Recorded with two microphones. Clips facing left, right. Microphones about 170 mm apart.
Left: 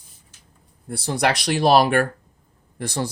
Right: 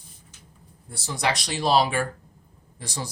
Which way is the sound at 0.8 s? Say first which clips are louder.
Left 5 dB; 60° left (ahead or behind).